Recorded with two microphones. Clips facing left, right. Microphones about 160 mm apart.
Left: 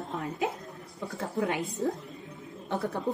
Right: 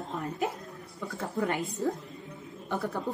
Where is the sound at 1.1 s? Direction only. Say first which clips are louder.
Even; 20° left (ahead or behind).